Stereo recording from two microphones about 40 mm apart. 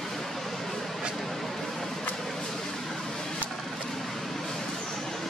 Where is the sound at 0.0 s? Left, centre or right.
Centre.